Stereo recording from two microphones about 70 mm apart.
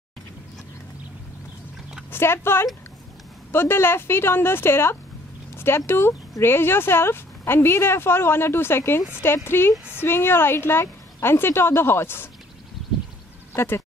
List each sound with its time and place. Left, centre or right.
2.0 s speech: left
13.6 s speech: left